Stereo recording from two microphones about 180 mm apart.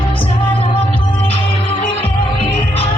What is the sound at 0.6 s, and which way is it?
Music, 30° left (ahead or behind).